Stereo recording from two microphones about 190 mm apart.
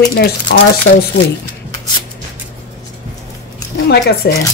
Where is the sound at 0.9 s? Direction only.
90° left.